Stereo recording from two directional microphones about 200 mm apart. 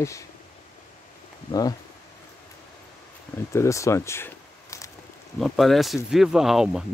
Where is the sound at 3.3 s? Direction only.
15° left (ahead or behind).